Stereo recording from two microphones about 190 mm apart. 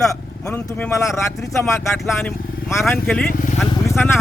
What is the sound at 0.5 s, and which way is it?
Speech, 10° left (ahead or behind).